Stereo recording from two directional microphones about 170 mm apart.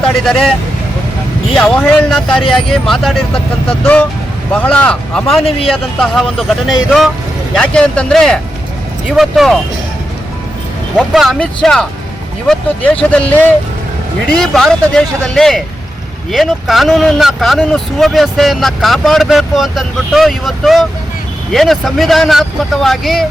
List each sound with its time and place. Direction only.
1.5 s speech: 5° left (ahead or behind)
4.5 s speech: 10° left (ahead or behind)
5.4 s speech: 35° left (ahead or behind)
6.0 s speech: 5° left (ahead or behind)
10.9 s speech: centre (ahead or behind)